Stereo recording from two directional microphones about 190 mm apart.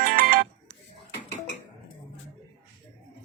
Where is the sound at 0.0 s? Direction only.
50° right (ahead or behind).